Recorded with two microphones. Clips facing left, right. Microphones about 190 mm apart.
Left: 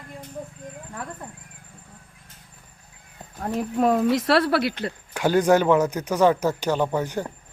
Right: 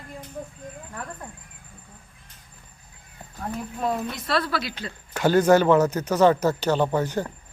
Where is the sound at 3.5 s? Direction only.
85° left; by 4.9 s 60° left (ahead or behind).